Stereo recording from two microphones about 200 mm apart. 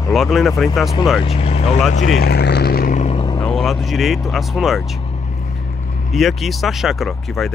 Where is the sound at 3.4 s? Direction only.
5° left (ahead or behind).